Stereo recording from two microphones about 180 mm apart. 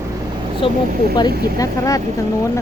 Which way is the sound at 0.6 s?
30° left (ahead or behind).